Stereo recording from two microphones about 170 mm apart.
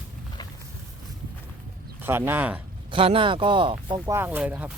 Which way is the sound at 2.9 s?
30° right (ahead or behind).